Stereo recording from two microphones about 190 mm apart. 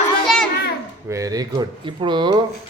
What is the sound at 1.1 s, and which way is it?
Speech, 20° right (ahead or behind).